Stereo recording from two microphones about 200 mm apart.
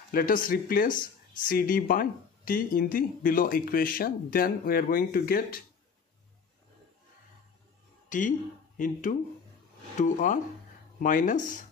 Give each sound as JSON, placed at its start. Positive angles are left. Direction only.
{"t": 0.1, "sound": "speech", "side_deg": 45}
{"t": 8.1, "sound": "speech", "side_deg": 40}